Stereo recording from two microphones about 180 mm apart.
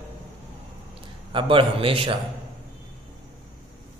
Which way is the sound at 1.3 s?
30° right (ahead or behind).